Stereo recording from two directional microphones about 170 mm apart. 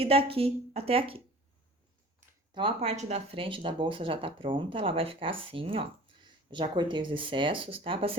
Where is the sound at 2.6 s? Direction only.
35° right (ahead or behind).